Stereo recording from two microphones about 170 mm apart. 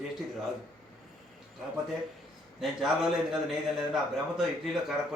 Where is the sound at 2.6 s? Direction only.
Centre (ahead or behind).